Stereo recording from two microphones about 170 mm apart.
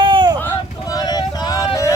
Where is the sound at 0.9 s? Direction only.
25° left (ahead or behind).